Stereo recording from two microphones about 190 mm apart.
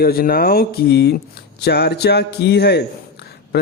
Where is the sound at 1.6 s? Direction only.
60° left (ahead or behind).